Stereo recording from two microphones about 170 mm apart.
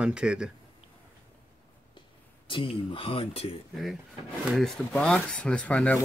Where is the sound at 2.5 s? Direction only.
30° left (ahead or behind).